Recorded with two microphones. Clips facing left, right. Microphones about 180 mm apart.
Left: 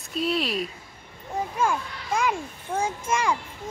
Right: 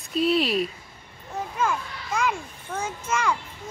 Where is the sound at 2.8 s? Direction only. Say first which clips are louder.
Even; 10° left (ahead or behind).